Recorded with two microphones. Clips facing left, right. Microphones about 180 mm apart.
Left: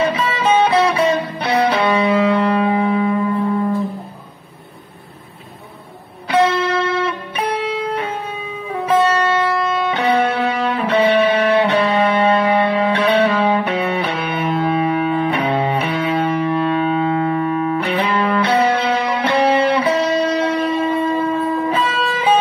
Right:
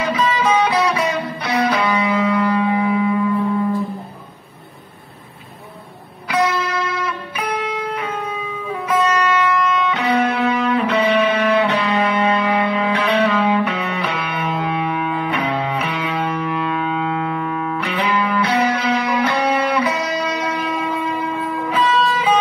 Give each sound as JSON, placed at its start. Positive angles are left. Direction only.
{"t": 0.0, "sound": "music", "side_deg": 30}
{"t": 6.2, "sound": "music", "side_deg": 30}